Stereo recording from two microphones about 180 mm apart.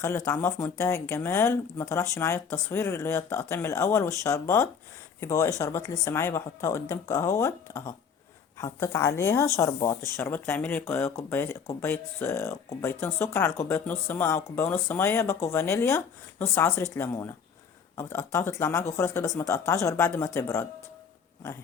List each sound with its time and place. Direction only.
0.3 s speech: 15° left (ahead or behind)